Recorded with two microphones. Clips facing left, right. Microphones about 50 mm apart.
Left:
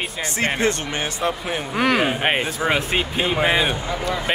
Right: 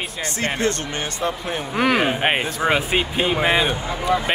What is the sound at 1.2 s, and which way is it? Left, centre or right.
Speech, centre.